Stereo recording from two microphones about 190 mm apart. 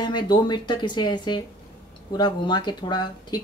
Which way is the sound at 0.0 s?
25° left (ahead or behind).